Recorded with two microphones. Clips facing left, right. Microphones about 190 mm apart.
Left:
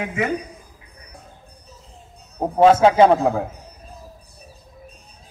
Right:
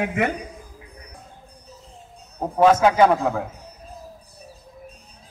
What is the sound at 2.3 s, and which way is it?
A man's voice, 30° left (ahead or behind).